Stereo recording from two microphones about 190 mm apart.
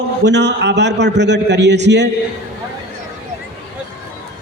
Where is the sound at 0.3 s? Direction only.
65° right (ahead or behind).